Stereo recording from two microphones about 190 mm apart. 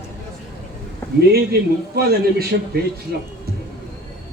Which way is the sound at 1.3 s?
55° right (ahead or behind).